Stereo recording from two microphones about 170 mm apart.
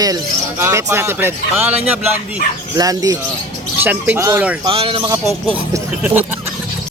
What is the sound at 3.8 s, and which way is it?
Speech, 10° right (ahead or behind).